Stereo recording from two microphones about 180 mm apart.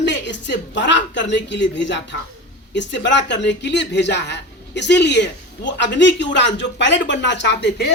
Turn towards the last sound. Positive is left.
turn(degrees=70)  # may be behind; listen again after turning